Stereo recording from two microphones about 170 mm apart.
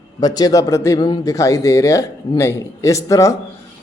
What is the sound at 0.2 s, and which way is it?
A man's voice, 25° left (ahead or behind).